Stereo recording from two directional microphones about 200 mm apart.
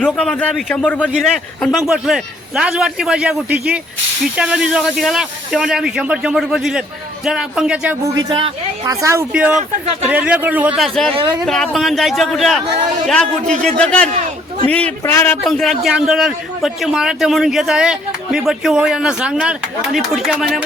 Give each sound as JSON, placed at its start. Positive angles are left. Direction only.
{"t": 0.0, "sound": "a man's voice", "side_deg": 5}
{"t": 8.2, "sound": "a man's voice", "side_deg": -25}
{"t": 11.1, "sound": "speech", "side_deg": -25}
{"t": 11.4, "sound": "a man's voice", "side_deg": 0}
{"t": 15.4, "sound": "a man's voice", "side_deg": 0}